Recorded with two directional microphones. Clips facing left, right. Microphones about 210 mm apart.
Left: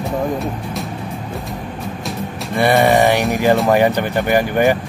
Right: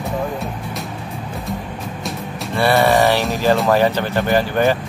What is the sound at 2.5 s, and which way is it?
Speech, 15° left (ahead or behind).